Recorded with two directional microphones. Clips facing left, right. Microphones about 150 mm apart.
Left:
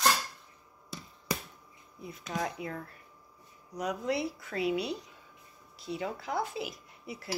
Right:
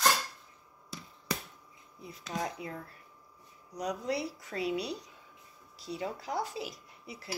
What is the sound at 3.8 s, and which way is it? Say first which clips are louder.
Speech: left 2 dB; 35° right (ahead or behind).